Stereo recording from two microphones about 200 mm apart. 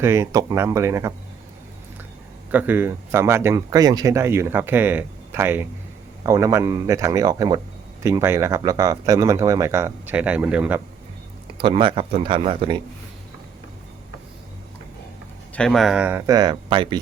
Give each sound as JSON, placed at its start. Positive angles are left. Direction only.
{"t": 0.0, "sound": "speech", "side_deg": -15}
{"t": 2.5, "sound": "speech", "side_deg": -10}
{"t": 11.4, "sound": "a man's voice", "side_deg": -25}
{"t": 15.5, "sound": "speech", "side_deg": 0}